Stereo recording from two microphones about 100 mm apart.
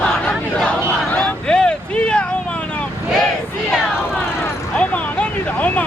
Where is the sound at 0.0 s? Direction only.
10° left (ahead or behind).